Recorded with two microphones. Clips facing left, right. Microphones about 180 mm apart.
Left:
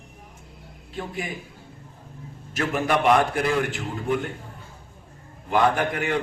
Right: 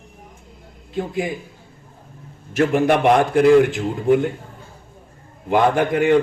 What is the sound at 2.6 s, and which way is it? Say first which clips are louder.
A man's voice: right 6 dB; 60° right (ahead or behind).